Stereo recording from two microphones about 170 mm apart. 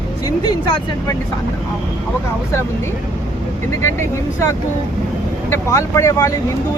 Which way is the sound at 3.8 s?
15° left (ahead or behind).